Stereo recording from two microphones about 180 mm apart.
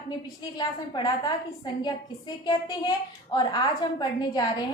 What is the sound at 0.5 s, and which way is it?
A woman's voice, 25° left (ahead or behind).